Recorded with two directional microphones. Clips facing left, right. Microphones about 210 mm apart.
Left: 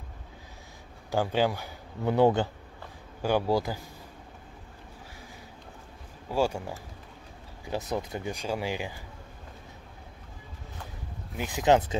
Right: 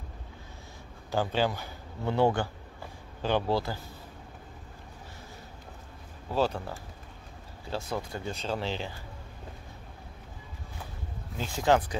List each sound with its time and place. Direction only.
1.1 s speech: 15° left (ahead or behind)
6.3 s speech: 10° left (ahead or behind)
11.3 s speech: 15° left (ahead or behind)